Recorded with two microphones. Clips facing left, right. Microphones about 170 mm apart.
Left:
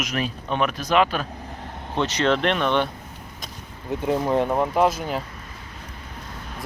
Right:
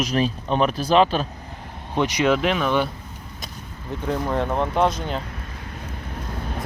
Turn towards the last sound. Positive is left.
turn(degrees=5)  # may be behind; listen again after turning